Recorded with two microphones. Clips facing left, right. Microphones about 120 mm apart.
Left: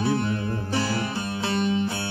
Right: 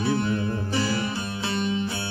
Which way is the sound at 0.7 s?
55° left (ahead or behind).